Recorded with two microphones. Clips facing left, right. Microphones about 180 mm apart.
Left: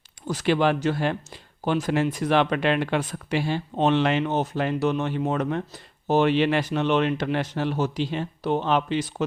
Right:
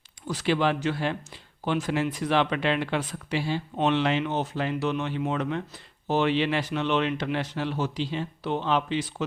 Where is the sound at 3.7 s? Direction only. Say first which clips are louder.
Left 3 dB; 40° left (ahead or behind).